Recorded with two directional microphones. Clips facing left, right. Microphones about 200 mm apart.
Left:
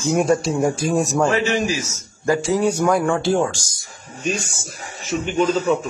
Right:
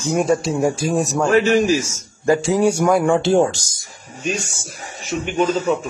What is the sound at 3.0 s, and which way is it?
Speech, 20° right (ahead or behind).